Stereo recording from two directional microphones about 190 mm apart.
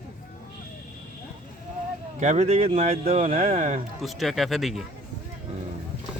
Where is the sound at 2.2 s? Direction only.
35° right (ahead or behind).